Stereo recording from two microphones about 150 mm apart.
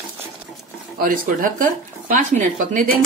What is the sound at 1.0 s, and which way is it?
Speech, 65° right (ahead or behind).